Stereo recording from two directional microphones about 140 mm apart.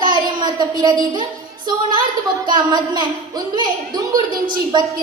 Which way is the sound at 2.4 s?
30° right (ahead or behind).